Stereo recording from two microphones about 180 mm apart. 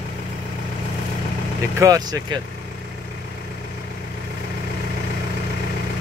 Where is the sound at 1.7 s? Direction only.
20° right (ahead or behind).